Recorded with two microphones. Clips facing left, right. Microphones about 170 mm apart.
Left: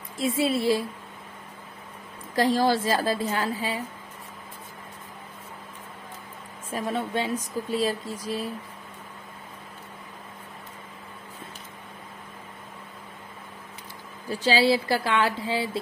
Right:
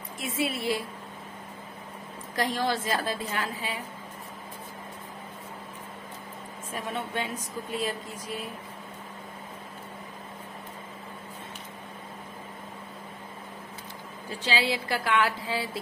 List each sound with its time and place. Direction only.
0.2 s speech: 30° left (ahead or behind)
2.3 s speech: 35° left (ahead or behind)
6.7 s speech: 35° left (ahead or behind)
14.4 s speech: 35° left (ahead or behind)